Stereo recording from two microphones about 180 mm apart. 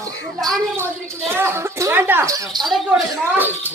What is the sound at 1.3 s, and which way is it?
Speech, 15° right (ahead or behind).